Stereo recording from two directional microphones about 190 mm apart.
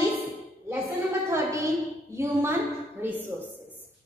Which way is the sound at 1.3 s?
15° right (ahead or behind).